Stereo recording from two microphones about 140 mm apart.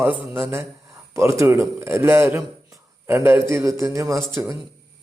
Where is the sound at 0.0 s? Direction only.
15° right (ahead or behind).